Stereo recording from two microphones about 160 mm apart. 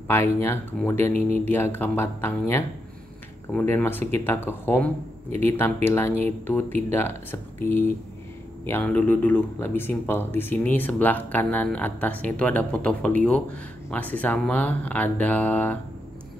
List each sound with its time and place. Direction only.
0.1 s speech: 15° left (ahead or behind)